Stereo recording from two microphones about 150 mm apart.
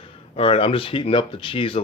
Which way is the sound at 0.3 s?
35° left (ahead or behind).